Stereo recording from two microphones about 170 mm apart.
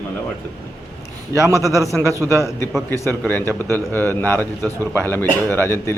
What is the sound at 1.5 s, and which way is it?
Speech, 20° left (ahead or behind).